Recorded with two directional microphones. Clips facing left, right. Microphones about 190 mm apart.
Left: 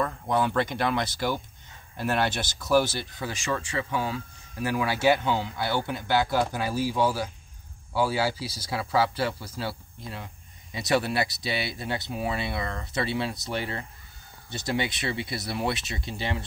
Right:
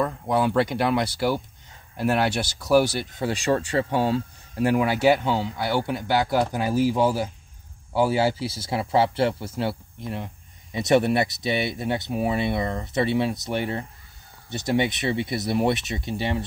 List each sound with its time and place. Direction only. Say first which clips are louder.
0.0 s speech: right 3 dB; 10° right (ahead or behind)
3.2 s speech: right 8 dB; 30° right (ahead or behind); by 16.4 s 15° right (ahead or behind)